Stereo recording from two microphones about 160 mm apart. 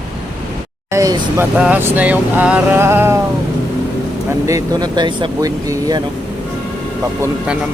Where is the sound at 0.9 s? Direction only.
20° right (ahead or behind).